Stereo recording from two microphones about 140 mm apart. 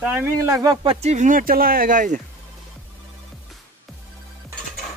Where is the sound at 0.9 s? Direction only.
50° right (ahead or behind); by 2.2 s 70° right (ahead or behind).